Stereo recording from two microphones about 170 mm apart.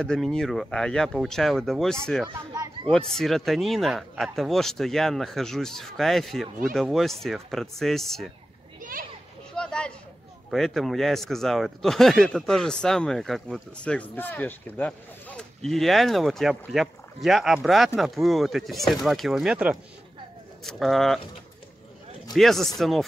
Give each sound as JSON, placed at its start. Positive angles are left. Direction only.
{"t": 0.0, "sound": "speech", "side_deg": 5}
{"t": 2.2, "sound": "a child's voice", "side_deg": -25}
{"t": 2.9, "sound": "speech", "side_deg": 5}
{"t": 9.5, "sound": "a sound", "side_deg": 5}
{"t": 10.5, "sound": "speech", "side_deg": 0}
{"t": 22.3, "sound": "speech", "side_deg": 0}